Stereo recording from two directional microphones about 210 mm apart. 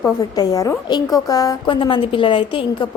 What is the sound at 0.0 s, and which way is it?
A woman's voice, 15° left (ahead or behind).